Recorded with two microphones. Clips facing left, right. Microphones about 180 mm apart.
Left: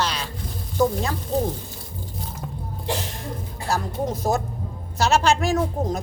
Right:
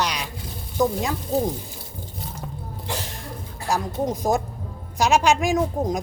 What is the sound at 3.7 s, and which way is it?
A woman's voice, 15° right (ahead or behind).